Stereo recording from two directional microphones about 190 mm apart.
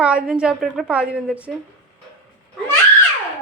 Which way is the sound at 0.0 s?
5° right (ahead or behind).